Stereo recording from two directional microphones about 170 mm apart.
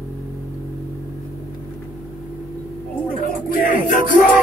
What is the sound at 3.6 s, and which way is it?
Music, 50° left (ahead or behind).